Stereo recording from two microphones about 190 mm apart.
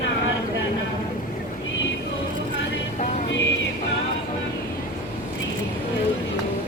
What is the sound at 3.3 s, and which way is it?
Music, 75° left (ahead or behind).